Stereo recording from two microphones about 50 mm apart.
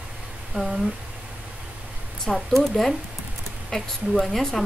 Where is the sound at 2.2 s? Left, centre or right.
Centre.